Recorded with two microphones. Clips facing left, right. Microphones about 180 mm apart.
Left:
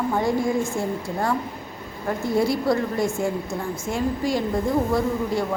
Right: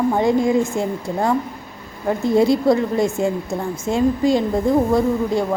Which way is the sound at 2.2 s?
20° right (ahead or behind).